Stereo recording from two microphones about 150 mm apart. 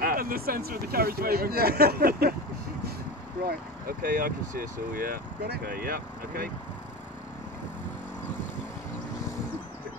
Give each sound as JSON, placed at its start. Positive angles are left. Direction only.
{"t": 0.0, "sound": "speech", "side_deg": -75}
{"t": 3.4, "sound": "speech", "side_deg": -75}